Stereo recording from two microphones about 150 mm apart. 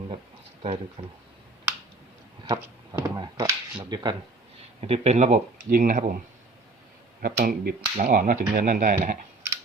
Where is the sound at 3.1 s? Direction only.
25° right (ahead or behind).